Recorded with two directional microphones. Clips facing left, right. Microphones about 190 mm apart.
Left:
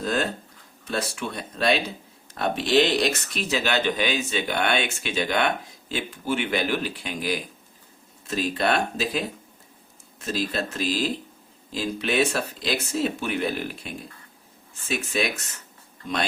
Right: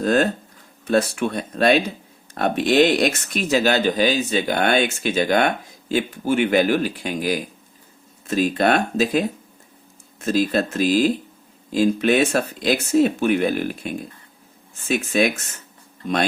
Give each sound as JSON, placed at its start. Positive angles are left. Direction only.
{"t": 0.0, "sound": "speech", "side_deg": -50}